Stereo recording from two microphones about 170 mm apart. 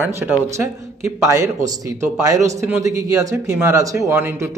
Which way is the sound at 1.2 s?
20° right (ahead or behind).